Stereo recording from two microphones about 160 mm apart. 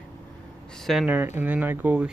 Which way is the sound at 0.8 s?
5° right (ahead or behind).